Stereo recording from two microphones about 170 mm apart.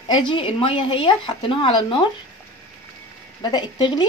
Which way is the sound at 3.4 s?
25° left (ahead or behind).